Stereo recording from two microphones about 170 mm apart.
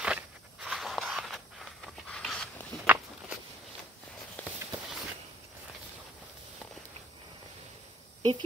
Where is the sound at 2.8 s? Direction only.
10° right (ahead or behind).